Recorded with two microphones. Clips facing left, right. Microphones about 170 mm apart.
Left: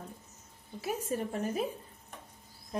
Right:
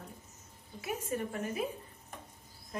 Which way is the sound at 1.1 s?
30° left (ahead or behind).